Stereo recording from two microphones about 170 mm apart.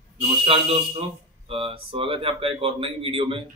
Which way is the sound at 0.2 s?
30° right (ahead or behind).